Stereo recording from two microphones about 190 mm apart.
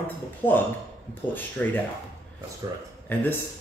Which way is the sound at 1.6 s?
10° left (ahead or behind).